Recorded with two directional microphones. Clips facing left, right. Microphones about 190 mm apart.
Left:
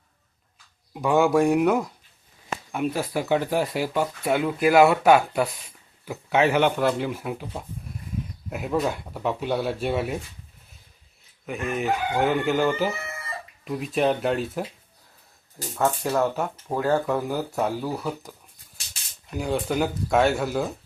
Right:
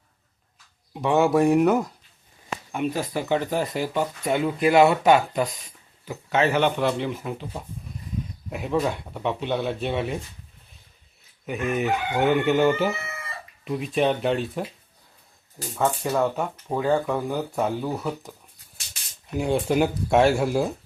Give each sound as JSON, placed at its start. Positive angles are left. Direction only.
{"t": 0.9, "sound": "speech", "side_deg": 5}
{"t": 11.4, "sound": "speech", "side_deg": 0}
{"t": 15.7, "sound": "speech", "side_deg": 0}
{"t": 19.4, "sound": "speech", "side_deg": -30}
{"t": 19.7, "sound": "speech", "side_deg": -5}
{"t": 20.1, "sound": "speech", "side_deg": -30}
{"t": 20.5, "sound": "speech", "side_deg": -5}